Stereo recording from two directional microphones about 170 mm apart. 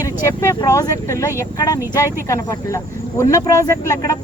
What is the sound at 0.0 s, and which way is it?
Speech, 15° left (ahead or behind).